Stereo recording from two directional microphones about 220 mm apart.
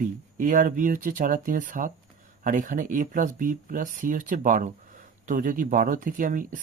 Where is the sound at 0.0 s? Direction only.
40° right (ahead or behind).